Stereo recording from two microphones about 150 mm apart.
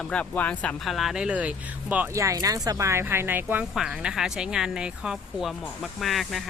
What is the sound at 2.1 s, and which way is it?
Speech, 20° right (ahead or behind).